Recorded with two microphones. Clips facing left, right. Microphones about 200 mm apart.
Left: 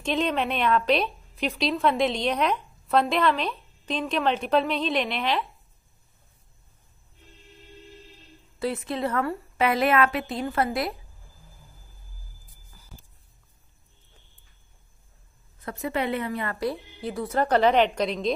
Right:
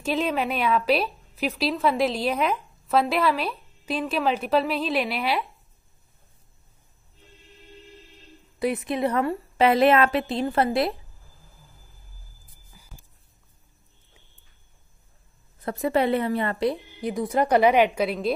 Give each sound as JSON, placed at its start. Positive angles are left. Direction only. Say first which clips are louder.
{"t": 0.0, "sound": "a woman's voice", "louder": "right 1 dB", "side_deg": -5}
{"t": 8.5, "sound": "a woman's voice", "louder": "right 3 dB", "side_deg": -15}
{"t": 12.7, "sound": "music", "louder": "left 1 dB", "side_deg": -10}
{"t": 15.6, "sound": "a woman's voice", "louder": "right 5 dB", "side_deg": -35}